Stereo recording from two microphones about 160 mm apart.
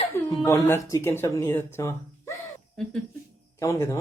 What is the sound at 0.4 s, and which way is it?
Speech, 15° left (ahead or behind).